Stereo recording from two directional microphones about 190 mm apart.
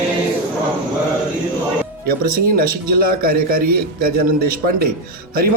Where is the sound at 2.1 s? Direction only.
50° right (ahead or behind).